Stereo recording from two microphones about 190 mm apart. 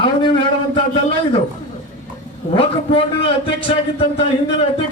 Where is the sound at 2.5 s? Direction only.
25° left (ahead or behind).